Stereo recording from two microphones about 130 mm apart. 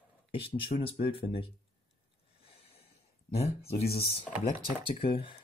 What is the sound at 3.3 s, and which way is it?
Speech, 50° left (ahead or behind).